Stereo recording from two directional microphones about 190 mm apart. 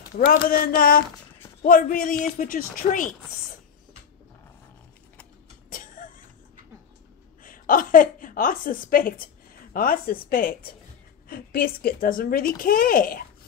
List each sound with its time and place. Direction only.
0.3 s speech: 50° left (ahead or behind)
5.7 s vehicle: 45° left (ahead or behind)
7.4 s a woman's voice: 45° left (ahead or behind)